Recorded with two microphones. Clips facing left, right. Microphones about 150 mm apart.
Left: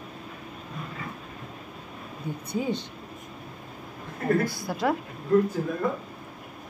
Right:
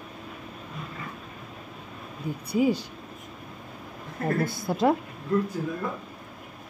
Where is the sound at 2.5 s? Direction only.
10° right (ahead or behind).